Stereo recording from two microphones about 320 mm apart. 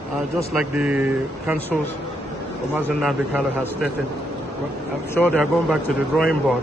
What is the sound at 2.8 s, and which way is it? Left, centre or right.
A man's voice, centre.